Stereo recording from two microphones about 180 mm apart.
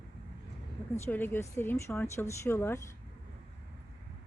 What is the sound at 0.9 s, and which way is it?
Speech, 10° left (ahead or behind).